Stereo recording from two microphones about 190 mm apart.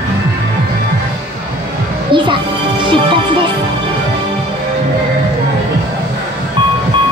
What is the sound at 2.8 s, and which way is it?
Music, 25° right (ahead or behind).